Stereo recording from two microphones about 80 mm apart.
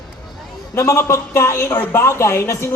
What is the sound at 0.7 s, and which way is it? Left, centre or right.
Speech, left.